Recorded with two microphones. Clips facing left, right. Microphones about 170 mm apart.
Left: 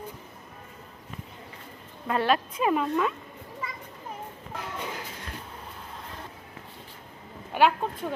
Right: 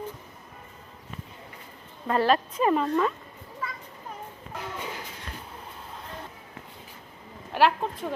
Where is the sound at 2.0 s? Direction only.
Centre (ahead or behind).